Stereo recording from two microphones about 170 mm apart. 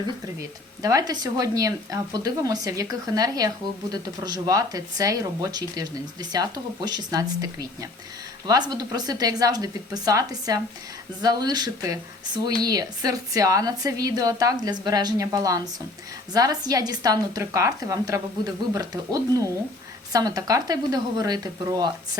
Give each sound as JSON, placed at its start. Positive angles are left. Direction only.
{"t": 0.8, "sound": "a woman's voice", "side_deg": -20}